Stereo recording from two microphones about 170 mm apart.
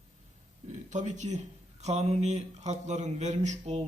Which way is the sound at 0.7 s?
45° right (ahead or behind).